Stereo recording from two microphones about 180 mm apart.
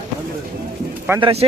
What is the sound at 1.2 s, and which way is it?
Speech, 30° right (ahead or behind).